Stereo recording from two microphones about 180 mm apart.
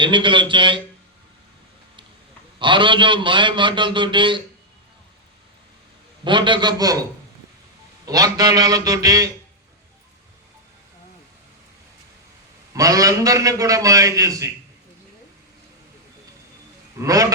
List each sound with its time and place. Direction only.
0.0 s a man's voice: 25° right (ahead or behind)
2.6 s a man's voice: 25° right (ahead or behind)
6.2 s a man's voice: 25° right (ahead or behind)
8.0 s a man's voice: 20° right (ahead or behind)
12.7 s a man's voice: 20° right (ahead or behind)
17.0 s a man's voice: 20° right (ahead or behind)